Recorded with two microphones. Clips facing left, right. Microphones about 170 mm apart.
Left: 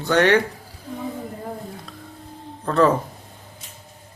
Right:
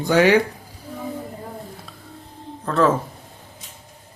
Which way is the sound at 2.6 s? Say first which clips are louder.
Left 1 dB; centre (ahead or behind).